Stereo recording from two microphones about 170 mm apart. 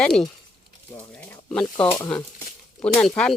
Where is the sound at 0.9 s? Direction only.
10° left (ahead or behind).